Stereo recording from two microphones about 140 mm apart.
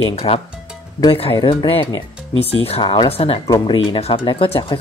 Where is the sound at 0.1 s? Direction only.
45° left (ahead or behind).